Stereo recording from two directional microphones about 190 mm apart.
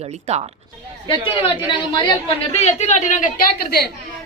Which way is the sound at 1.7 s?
25° left (ahead or behind).